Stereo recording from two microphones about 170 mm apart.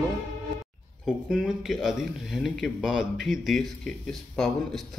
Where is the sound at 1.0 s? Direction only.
5° right (ahead or behind).